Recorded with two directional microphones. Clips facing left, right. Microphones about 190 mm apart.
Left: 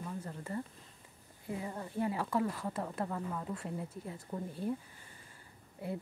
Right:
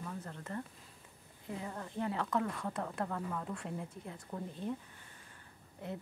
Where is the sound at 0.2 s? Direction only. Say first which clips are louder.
Left 2 dB; 10° left (ahead or behind).